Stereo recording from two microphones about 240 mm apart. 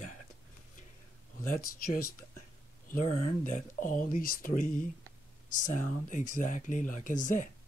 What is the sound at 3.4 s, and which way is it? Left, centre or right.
Speech, left.